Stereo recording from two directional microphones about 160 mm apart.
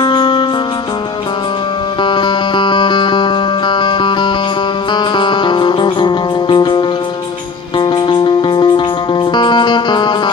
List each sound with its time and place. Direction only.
0.0 s music: 30° left (ahead or behind)
2.0 s music: 30° left (ahead or behind)